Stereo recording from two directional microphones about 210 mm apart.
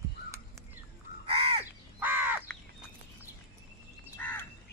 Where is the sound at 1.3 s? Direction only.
25° right (ahead or behind).